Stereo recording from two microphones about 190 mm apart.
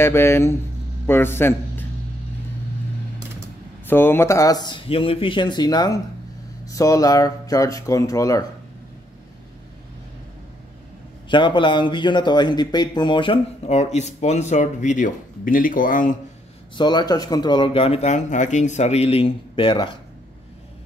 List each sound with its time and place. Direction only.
0.0 s a man's voice: 15° left (ahead or behind)
3.8 s speech: 10° left (ahead or behind)
11.2 s a man's voice: 25° left (ahead or behind); by 16.2 s 45° left (ahead or behind)
16.7 s speech: 20° left (ahead or behind)